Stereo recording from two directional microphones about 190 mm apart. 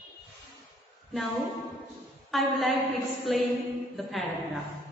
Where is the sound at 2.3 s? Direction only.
Centre (ahead or behind).